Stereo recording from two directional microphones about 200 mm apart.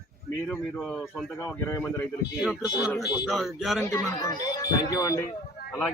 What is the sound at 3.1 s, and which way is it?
Speech, centre (ahead or behind).